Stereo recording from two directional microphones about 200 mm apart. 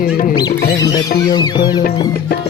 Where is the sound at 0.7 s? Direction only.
20° left (ahead or behind).